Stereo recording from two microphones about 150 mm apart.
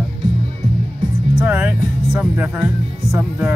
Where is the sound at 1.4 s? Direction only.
15° right (ahead or behind).